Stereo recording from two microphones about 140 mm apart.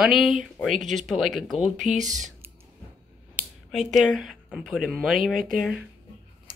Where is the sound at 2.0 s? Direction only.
60° right (ahead or behind).